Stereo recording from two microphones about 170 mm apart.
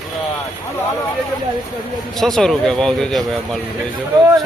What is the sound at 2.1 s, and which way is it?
Speech, centre (ahead or behind).